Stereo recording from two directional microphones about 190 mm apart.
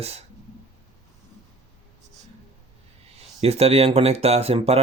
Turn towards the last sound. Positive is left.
turn(degrees=-35)  # may be behind; listen again after turning